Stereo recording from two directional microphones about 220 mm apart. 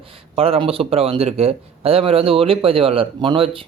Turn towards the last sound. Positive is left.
turn(degrees=-25)  # may be behind; listen again after turning